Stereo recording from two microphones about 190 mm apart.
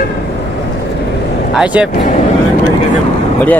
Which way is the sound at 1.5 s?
5° right (ahead or behind).